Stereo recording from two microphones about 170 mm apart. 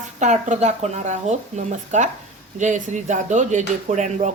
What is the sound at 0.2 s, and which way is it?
Speech, 45° right (ahead or behind).